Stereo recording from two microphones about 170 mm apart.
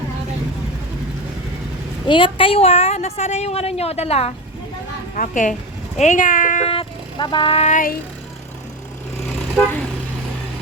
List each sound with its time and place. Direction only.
2.0 s a woman's voice: 30° left (ahead or behind)
5.1 s speech: 50° left (ahead or behind)
6.7 s vehicle: 30° left (ahead or behind); by 7.9 s 50° left (ahead or behind)